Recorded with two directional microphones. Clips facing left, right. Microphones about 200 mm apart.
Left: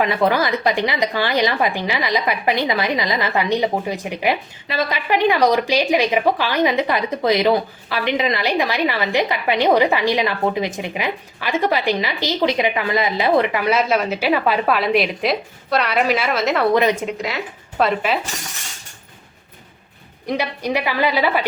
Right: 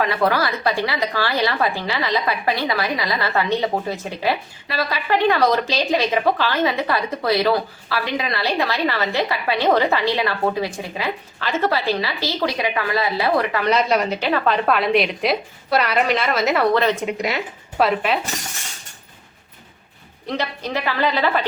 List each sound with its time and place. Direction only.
0.0 s a woman's voice: 20° left (ahead or behind)
13.6 s a woman's voice: 5° left (ahead or behind)
16.7 s a woman's voice: 10° left (ahead or behind)
17.7 s a woman's voice: centre (ahead or behind)
20.2 s a woman's voice: 10° left (ahead or behind)